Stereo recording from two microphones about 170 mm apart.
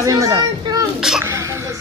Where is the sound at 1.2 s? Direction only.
15° right (ahead or behind).